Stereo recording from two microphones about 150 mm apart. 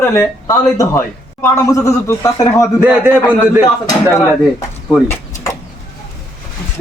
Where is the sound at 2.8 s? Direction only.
10° right (ahead or behind).